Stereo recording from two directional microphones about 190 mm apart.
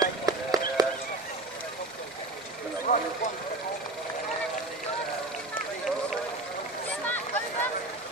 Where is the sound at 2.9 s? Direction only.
45° left (ahead or behind).